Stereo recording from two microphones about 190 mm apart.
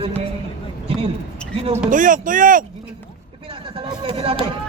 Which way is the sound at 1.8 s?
45° right (ahead or behind).